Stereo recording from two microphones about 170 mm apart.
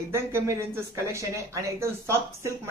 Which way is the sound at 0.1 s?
15° right (ahead or behind).